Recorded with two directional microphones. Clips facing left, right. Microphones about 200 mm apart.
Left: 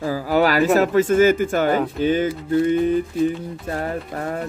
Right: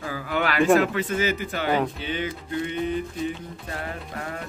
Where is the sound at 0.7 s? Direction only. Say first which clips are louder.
Left 8 dB; 45° left (ahead or behind).